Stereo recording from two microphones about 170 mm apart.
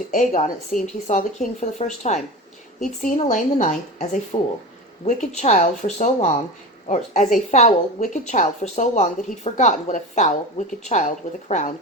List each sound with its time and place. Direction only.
0.1 s a woman's voice: 50° left (ahead or behind)
2.8 s a woman's voice: 50° left (ahead or behind)